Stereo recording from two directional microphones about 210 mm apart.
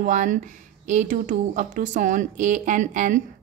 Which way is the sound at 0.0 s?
40° right (ahead or behind).